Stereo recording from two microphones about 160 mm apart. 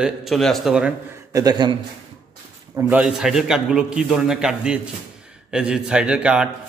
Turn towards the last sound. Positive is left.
turn(degrees=-5)  # may be behind; listen again after turning